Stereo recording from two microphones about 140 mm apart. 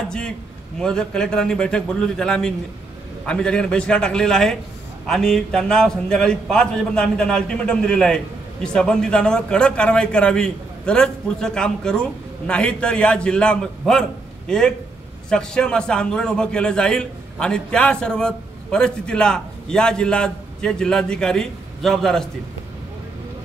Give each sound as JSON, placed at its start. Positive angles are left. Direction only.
{"t": 0.7, "sound": "a man's voice", "side_deg": 5}